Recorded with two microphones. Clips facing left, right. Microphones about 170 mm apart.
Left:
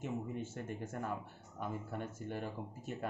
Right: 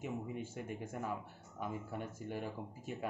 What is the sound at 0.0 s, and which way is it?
Speech, 10° right (ahead or behind).